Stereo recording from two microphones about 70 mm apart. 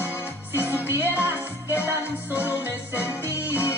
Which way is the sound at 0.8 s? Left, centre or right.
Right.